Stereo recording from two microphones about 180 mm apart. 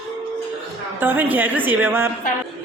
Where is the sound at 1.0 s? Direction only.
10° right (ahead or behind).